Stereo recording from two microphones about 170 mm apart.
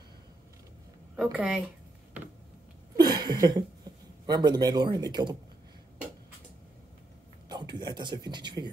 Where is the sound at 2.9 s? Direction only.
25° right (ahead or behind).